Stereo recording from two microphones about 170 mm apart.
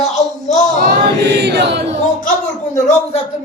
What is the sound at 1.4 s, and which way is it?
Chant, 75° right (ahead or behind).